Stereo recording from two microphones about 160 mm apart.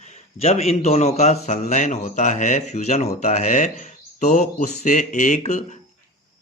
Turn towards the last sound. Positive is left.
turn(degrees=50)  # may be behind; listen again after turning